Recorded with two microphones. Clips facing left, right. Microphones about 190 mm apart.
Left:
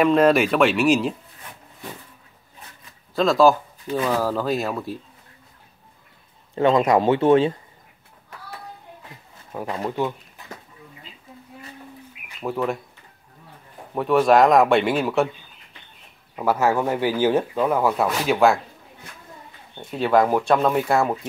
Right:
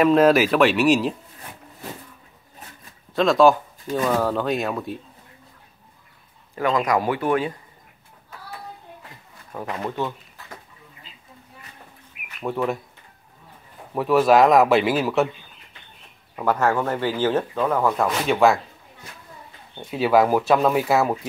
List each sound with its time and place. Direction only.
0.0 s speech: centre (ahead or behind)
3.2 s speech: centre (ahead or behind)
6.5 s speech: 25° left (ahead or behind)
9.5 s speech: 10° left (ahead or behind)
12.4 s speech: centre (ahead or behind)
13.9 s speech: centre (ahead or behind)
16.3 s speech: 10° left (ahead or behind)
19.8 s speech: 5° right (ahead or behind)